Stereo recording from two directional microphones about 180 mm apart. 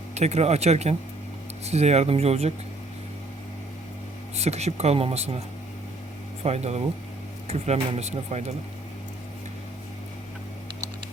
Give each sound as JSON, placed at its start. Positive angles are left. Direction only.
{"t": 0.1, "sound": "speech", "side_deg": -35}
{"t": 4.4, "sound": "speech", "side_deg": -35}
{"t": 6.4, "sound": "speech", "side_deg": -35}